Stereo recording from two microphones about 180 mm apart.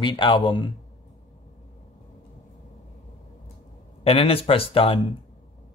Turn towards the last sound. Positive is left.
turn(degrees=30)  # may be behind; listen again after turning